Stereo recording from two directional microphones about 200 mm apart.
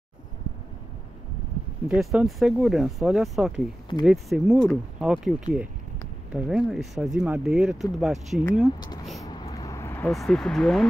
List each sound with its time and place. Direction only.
2.0 s speech: centre (ahead or behind)
8.7 s speech: 20° left (ahead or behind)
9.2 s vehicle: 20° left (ahead or behind)
10.1 s speech: centre (ahead or behind)